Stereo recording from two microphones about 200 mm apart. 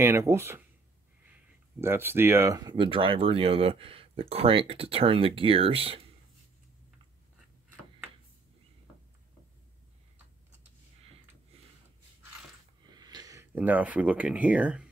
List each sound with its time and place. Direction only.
0.0 s speech: 10° right (ahead or behind)
1.8 s speech: 10° right (ahead or behind); by 6.0 s 30° right (ahead or behind)
11.5 s a sound: 30° right (ahead or behind)
12.9 s speech: 20° right (ahead or behind)